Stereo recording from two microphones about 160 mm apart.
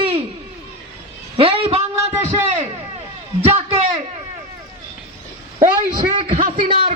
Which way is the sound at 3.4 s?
40° right (ahead or behind).